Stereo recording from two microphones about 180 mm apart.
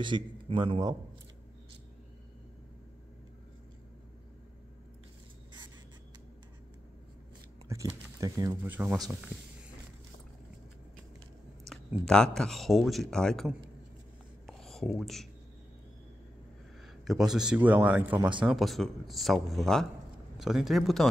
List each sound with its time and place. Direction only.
0.0 s a man's voice: 25° right (ahead or behind)
7.6 s speech: 15° right (ahead or behind)
11.7 s speech: 5° left (ahead or behind)
14.4 s whispering: centre (ahead or behind)
16.8 s speech: centre (ahead or behind)